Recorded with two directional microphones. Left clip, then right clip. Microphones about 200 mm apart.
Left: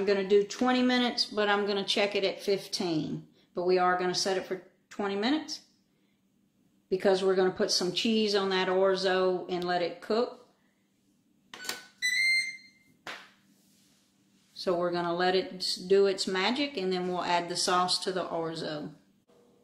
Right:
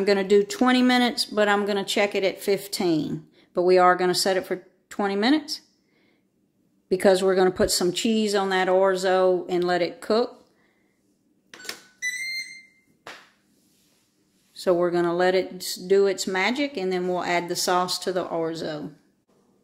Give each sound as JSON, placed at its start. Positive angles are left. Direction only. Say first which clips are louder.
{"t": 0.0, "sound": "speech", "louder": "right 5 dB", "side_deg": -55}
{"t": 6.9, "sound": "speech", "louder": "right 7 dB", "side_deg": -50}
{"t": 14.6, "sound": "speech", "louder": "right 8 dB", "side_deg": -40}